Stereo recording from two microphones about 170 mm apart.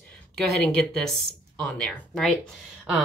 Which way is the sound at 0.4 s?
5° left (ahead or behind).